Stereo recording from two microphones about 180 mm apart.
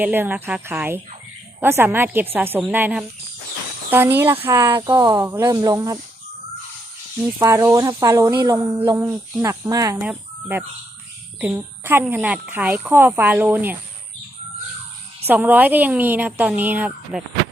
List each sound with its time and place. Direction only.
0.0 s speech: 10° right (ahead or behind)
4.7 s speech: 25° right (ahead or behind)
7.3 s speech: 15° right (ahead or behind)
15.3 s speech: 10° right (ahead or behind)